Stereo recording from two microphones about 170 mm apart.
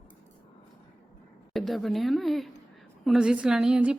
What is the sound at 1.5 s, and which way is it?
A woman's voice, centre (ahead or behind).